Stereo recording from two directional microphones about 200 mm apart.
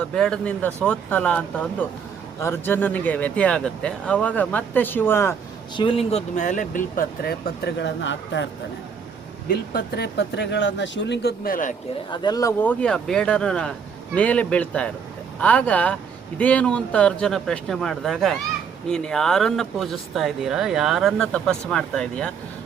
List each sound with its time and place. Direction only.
0.0 s speech: 5° left (ahead or behind)
5.8 s speech: 30° left (ahead or behind); by 8.4 s 65° left (ahead or behind)
9.5 s speech: 50° left (ahead or behind)
12.1 s speech: 20° left (ahead or behind)
12.8 s speech: 5° left (ahead or behind)